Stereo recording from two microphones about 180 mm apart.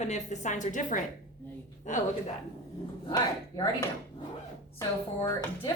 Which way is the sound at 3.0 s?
25° left (ahead or behind).